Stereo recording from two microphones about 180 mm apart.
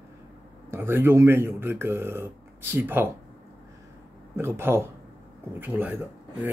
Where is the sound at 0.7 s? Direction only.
10° right (ahead or behind).